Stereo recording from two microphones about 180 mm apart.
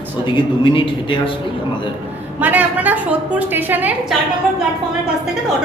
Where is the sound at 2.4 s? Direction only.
10° right (ahead or behind).